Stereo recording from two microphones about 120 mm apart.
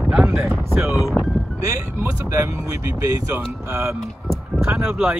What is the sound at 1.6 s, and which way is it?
Speech, 25° right (ahead or behind).